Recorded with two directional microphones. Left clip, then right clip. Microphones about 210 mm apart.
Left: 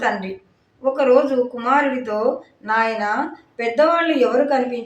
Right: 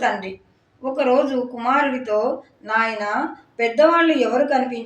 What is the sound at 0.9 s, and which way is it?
A woman's voice, 15° left (ahead or behind).